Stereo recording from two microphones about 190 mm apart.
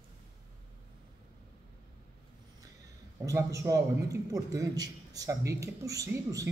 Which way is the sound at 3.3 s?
15° right (ahead or behind).